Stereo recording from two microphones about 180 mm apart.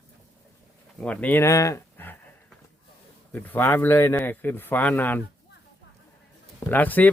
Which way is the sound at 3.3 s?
10° left (ahead or behind).